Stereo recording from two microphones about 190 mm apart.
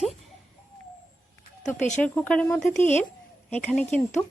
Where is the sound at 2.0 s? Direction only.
5° left (ahead or behind).